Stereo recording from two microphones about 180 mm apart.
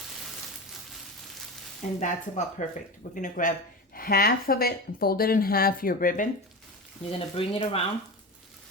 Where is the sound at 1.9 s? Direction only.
40° left (ahead or behind).